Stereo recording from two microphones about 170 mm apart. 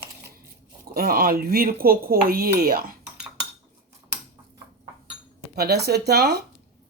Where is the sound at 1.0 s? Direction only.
60° right (ahead or behind).